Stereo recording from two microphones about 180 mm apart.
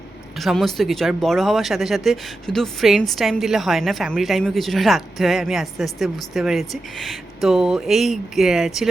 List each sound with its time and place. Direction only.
0.3 s speech: centre (ahead or behind)